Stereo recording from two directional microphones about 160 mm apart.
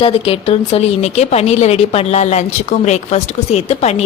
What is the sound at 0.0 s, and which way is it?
Speech, 35° left (ahead or behind).